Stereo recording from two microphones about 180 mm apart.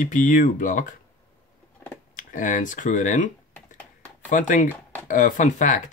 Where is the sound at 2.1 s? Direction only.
45° left (ahead or behind).